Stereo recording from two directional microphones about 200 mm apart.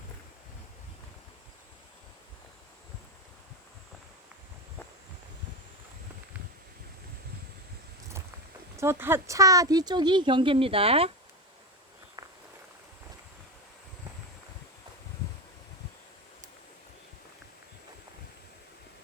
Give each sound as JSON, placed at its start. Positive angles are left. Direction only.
{"t": 8.7, "sound": "speech", "side_deg": -15}